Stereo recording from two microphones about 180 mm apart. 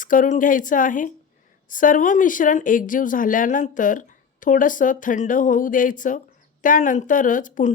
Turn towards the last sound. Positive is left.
turn(degrees=45)  # may be behind; listen again after turning